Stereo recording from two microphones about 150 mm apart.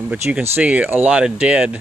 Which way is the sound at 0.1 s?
10° right (ahead or behind).